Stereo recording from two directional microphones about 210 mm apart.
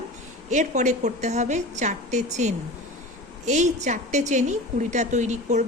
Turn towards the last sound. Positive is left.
turn(degrees=-35)  # may be behind; listen again after turning